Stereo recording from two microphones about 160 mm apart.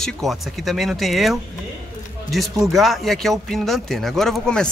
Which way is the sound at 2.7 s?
Centre (ahead or behind).